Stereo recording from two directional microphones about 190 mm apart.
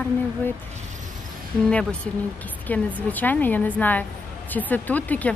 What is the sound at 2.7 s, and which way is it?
Speech, 10° left (ahead or behind).